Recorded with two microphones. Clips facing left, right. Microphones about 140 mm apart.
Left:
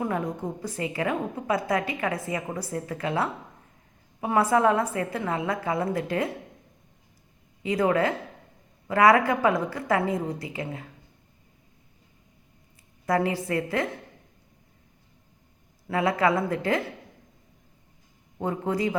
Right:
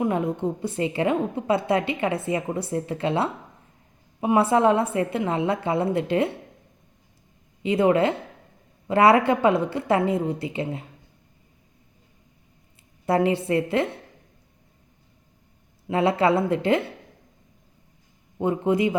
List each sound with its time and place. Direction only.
0.0 s a woman's voice: 20° right (ahead or behind)
7.6 s a woman's voice: 25° right (ahead or behind)
13.1 s a woman's voice: 25° right (ahead or behind)
15.9 s a woman's voice: 25° right (ahead or behind)
18.3 s a woman's voice: 20° right (ahead or behind)